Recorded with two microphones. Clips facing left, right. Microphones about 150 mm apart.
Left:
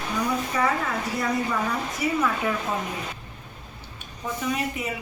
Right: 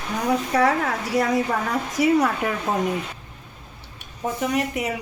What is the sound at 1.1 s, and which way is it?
A woman's voice, 85° right.